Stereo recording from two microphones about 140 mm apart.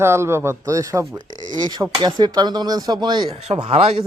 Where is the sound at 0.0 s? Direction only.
20° right (ahead or behind).